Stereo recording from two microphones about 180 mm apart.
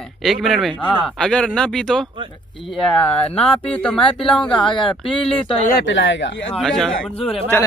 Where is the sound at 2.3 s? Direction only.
25° left (ahead or behind).